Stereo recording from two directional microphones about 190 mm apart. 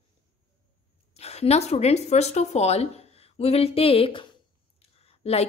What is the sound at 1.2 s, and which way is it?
A woman's voice, 35° left (ahead or behind).